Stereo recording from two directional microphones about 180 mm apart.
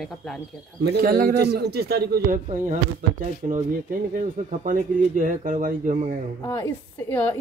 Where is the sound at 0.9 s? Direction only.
55° right (ahead or behind).